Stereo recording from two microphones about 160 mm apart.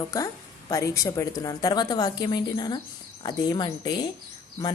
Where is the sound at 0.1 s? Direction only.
20° left (ahead or behind).